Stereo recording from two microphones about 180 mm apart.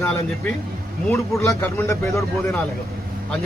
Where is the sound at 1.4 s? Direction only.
15° left (ahead or behind).